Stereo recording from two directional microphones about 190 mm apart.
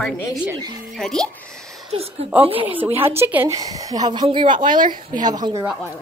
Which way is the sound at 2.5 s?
25° right (ahead or behind).